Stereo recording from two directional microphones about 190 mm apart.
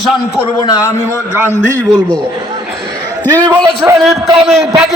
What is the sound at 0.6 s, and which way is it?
Speech, 20° left (ahead or behind).